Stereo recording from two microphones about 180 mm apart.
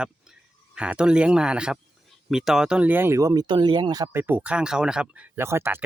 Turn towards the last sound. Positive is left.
turn(degrees=-15)  # may be behind; listen again after turning